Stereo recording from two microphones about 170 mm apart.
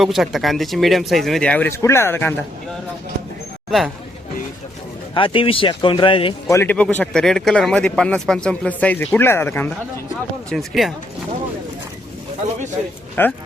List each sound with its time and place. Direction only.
0.0 s speech: centre (ahead or behind); by 2.3 s 15° left (ahead or behind)
3.7 s speech: centre (ahead or behind)
5.1 s speech: 30° left (ahead or behind)
6.5 s speech: 15° left (ahead or behind)
10.5 s speech: centre (ahead or behind)
13.2 s speech: 10° left (ahead or behind)